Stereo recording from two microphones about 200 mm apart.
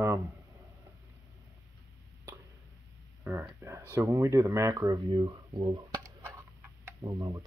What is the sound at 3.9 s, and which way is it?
Speech, 15° right (ahead or behind).